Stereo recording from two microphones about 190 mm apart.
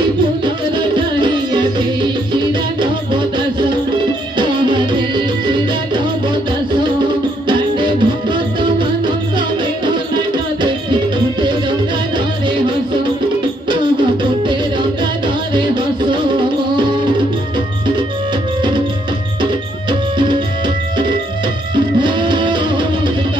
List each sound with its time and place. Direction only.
0.7 s music: 25° right (ahead or behind)
2.8 s music: 25° right (ahead or behind)
7.4 s music: 25° right (ahead or behind)
15.5 s music: 25° right (ahead or behind)
19.9 s music: 25° right (ahead or behind)
21.7 s music: 25° right (ahead or behind)